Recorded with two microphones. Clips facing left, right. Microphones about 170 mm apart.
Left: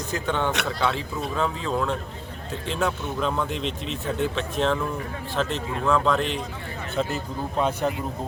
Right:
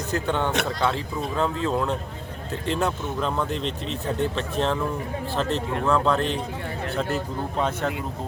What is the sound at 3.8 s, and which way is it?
Speech, 35° right (ahead or behind).